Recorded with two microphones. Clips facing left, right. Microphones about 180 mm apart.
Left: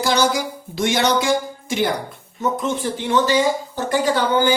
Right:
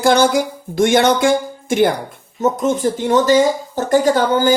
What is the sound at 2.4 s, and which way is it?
Speech, 40° right (ahead or behind).